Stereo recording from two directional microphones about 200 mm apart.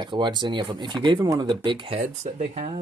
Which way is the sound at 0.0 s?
25° right (ahead or behind).